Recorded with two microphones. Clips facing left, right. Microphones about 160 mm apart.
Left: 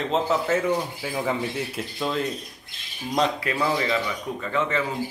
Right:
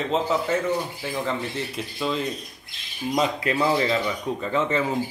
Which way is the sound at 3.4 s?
25° right (ahead or behind).